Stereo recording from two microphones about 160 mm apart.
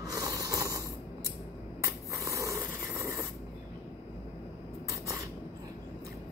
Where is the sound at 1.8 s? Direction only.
20° right (ahead or behind).